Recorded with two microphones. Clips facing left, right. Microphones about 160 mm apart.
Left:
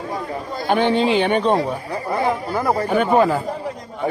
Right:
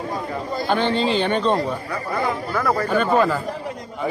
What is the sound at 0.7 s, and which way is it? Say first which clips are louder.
Speech: left 4 dB; 15° left (ahead or behind).